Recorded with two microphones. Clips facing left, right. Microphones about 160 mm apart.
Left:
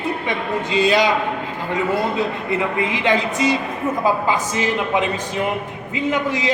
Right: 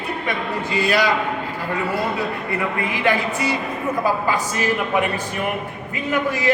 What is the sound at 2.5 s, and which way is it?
A man's voice, 20° left (ahead or behind).